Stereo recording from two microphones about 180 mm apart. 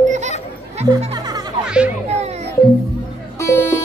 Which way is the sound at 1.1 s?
20° right (ahead or behind).